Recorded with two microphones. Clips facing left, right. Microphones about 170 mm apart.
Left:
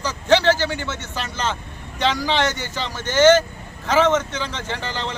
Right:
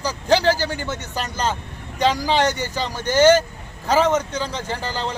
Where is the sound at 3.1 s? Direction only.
35° right (ahead or behind).